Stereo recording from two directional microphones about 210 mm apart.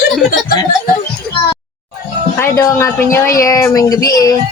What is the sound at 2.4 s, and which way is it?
Speech, 15° left (ahead or behind).